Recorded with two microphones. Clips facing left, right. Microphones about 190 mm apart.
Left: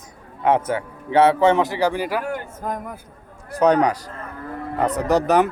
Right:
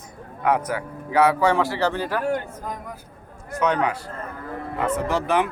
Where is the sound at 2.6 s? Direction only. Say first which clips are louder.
Left 5 dB; 50° left (ahead or behind).